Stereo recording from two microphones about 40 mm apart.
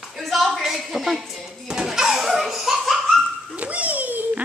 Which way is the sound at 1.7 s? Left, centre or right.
Centre.